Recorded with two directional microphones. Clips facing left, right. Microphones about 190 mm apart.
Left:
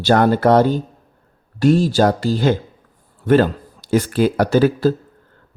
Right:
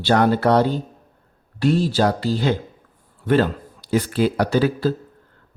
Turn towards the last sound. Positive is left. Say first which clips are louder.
# left 4 dB
turn(degrees=45)  # may be behind; listen again after turning